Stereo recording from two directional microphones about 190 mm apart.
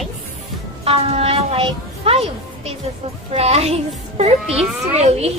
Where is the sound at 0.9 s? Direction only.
30° right (ahead or behind).